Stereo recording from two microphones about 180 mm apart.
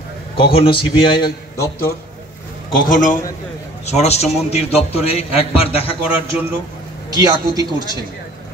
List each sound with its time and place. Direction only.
0.4 s a man's voice: 30° left (ahead or behind)
2.7 s a man's voice: 50° left (ahead or behind)
3.8 s a man's voice: 40° left (ahead or behind)
7.2 s a woman's voice: 20° right (ahead or behind)